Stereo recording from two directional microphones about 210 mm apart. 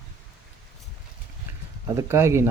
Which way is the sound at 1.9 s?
15° right (ahead or behind).